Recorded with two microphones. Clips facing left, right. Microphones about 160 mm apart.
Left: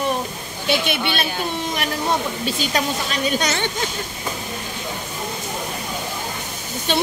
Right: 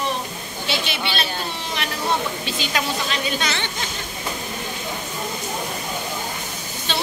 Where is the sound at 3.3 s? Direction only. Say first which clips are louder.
Left 3 dB; 45° left (ahead or behind).